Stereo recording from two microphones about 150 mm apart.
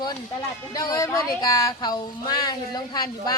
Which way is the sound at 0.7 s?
25° left (ahead or behind).